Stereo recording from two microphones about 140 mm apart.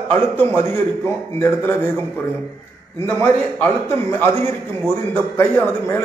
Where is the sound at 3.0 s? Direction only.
15° left (ahead or behind).